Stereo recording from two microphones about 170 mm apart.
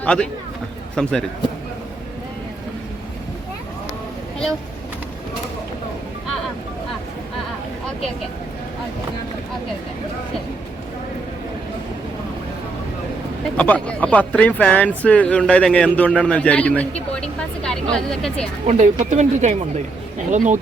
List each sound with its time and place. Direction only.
0.0 s a man's voice: 5° left (ahead or behind)
13.6 s speech: 5° left (ahead or behind)
18.6 s speech: 45° right (ahead or behind)